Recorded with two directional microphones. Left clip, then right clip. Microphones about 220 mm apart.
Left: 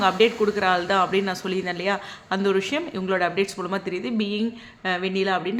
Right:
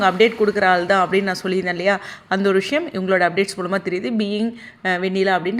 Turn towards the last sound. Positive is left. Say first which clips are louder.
# right 5 dB
turn(degrees=-20)  # may be behind; listen again after turning